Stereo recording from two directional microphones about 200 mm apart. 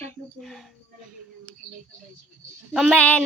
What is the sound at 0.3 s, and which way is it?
Speech, centre (ahead or behind).